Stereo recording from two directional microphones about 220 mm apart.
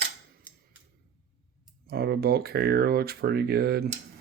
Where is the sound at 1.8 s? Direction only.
45° right (ahead or behind).